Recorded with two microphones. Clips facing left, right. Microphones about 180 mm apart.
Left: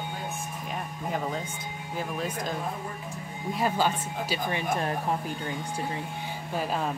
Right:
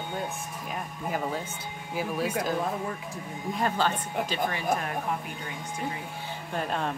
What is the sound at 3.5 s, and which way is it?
Speech, 5° left (ahead or behind).